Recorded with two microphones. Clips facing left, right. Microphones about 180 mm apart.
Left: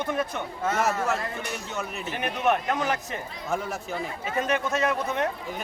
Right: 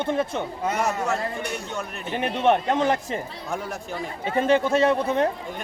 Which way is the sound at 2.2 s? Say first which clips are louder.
Right 4 dB; 30° right (ahead or behind).